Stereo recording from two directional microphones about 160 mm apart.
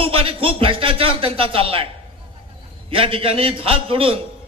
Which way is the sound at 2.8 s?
35° right (ahead or behind).